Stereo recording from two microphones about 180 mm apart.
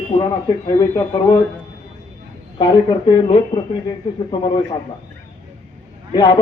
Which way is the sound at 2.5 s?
25° left (ahead or behind).